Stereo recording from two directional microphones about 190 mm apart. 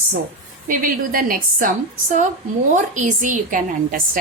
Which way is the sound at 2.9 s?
40° right (ahead or behind).